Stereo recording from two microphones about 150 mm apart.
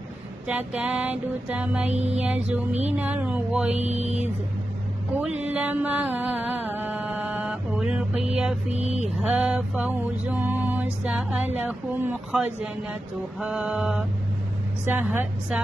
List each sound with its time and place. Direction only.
0.5 s mantra: 10° right (ahead or behind)
3.7 s mantra: 45° right (ahead or behind)
5.2 s music: 10° right (ahead or behind)
8.6 s mantra: 45° right (ahead or behind)
9.2 s mantra: 10° right (ahead or behind)